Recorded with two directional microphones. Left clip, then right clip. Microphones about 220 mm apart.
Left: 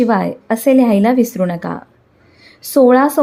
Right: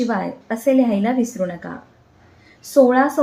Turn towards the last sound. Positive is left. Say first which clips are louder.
# left 4 dB
turn(degrees=40)  # may be behind; listen again after turning